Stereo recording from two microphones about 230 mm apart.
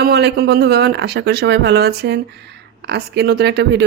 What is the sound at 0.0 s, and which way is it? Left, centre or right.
Speech, right.